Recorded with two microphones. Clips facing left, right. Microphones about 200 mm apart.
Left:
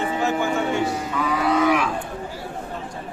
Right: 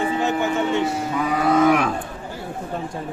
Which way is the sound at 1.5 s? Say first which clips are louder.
Right 4 dB; 45° right (ahead or behind).